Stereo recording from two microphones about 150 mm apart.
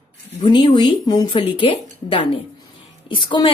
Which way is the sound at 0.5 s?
30° left (ahead or behind).